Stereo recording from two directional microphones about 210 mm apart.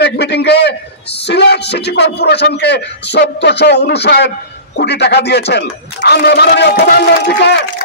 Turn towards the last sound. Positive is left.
turn(degrees=50)  # may be behind; listen again after turning